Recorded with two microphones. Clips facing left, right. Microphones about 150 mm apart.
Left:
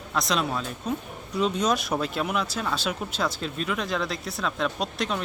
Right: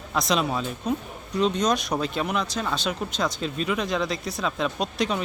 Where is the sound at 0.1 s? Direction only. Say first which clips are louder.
Right 2 dB; centre (ahead or behind).